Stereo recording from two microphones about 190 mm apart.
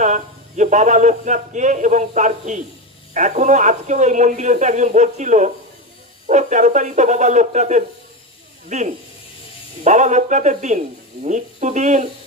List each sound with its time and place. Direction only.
0.0 s speech: 40° right (ahead or behind)